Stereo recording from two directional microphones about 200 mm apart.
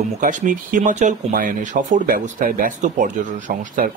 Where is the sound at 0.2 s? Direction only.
40° right (ahead or behind).